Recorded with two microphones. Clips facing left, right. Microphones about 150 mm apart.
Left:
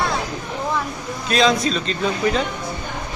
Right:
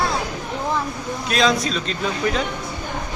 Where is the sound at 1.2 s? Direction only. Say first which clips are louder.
Left 2 dB; centre (ahead or behind).